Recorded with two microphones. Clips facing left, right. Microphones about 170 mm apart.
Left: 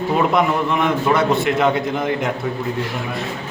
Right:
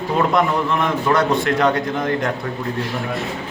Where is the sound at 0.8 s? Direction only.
Centre (ahead or behind).